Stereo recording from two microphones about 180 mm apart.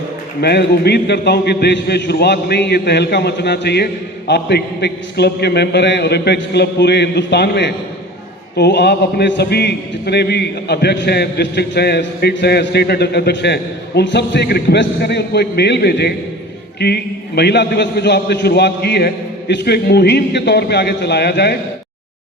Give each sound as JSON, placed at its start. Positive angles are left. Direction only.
{"t": 0.4, "sound": "a man's voice", "side_deg": 65}